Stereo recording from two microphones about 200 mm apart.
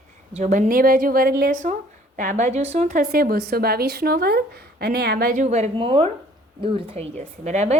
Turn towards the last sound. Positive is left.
turn(degrees=-35)  # may be behind; listen again after turning